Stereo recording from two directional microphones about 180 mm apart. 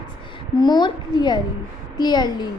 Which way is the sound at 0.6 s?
25° left (ahead or behind).